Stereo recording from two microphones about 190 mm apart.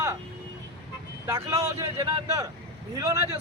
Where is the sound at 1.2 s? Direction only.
15° right (ahead or behind).